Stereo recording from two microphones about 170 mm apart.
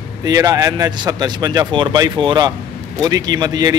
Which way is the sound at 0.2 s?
20° right (ahead or behind).